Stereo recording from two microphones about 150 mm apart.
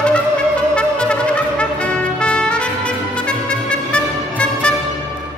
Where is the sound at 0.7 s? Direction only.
5° left (ahead or behind).